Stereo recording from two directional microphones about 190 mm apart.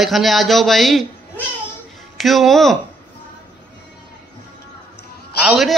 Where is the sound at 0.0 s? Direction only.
Centre (ahead or behind).